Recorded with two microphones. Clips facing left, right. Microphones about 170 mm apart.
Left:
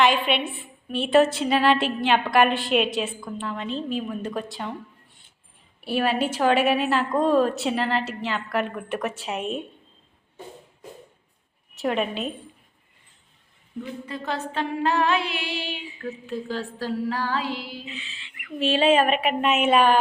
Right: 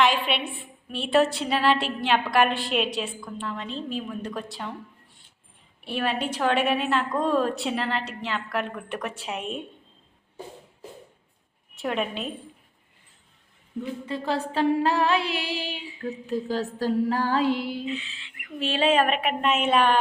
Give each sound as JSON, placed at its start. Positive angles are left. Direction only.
{"t": 0.0, "sound": "a woman's voice", "side_deg": 0}
{"t": 5.8, "sound": "a woman's voice", "side_deg": 5}
{"t": 11.7, "sound": "a woman's voice", "side_deg": 0}
{"t": 14.1, "sound": "a sound", "side_deg": -30}
{"t": 16.8, "sound": "female singing", "side_deg": -45}
{"t": 17.8, "sound": "a woman's voice", "side_deg": 0}